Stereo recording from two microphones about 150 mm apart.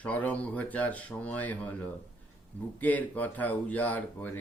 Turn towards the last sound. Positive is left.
turn(degrees=10)  # may be behind; listen again after turning